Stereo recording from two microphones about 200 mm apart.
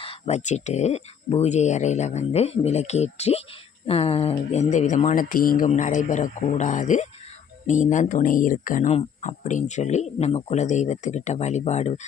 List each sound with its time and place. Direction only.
0.0 s speech: 30° left (ahead or behind)